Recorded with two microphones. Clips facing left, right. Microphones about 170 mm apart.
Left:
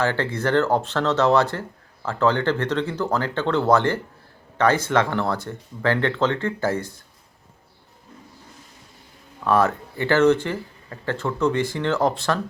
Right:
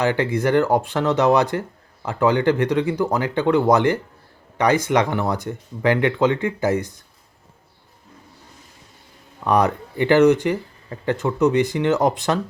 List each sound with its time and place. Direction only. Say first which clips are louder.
0.0 s speech: right 3 dB; 15° right (ahead or behind)
9.4 s speech: right 1 dB; 15° right (ahead or behind)